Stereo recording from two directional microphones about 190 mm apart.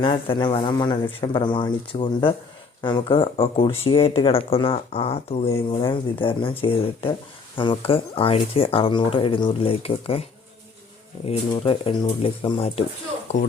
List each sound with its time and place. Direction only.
0.0 s speech: 25° left (ahead or behind)
11.3 s speech: 30° left (ahead or behind)